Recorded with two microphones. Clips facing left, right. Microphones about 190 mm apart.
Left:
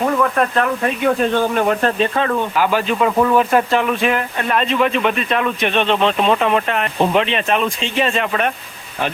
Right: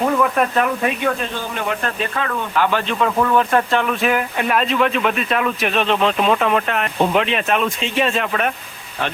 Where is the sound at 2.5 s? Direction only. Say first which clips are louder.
Left 2 dB; 10° left (ahead or behind).